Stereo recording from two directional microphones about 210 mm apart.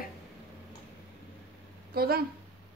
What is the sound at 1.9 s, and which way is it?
Speech, 45° right (ahead or behind).